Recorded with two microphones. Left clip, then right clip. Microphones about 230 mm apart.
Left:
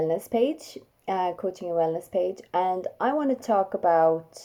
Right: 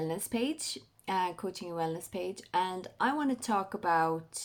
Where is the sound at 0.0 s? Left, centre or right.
Right.